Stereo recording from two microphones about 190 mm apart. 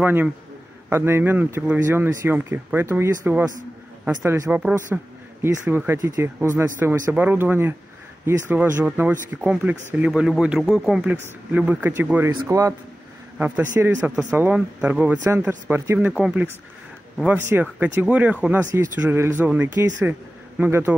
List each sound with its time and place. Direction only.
0.0 s speech: 10° right (ahead or behind)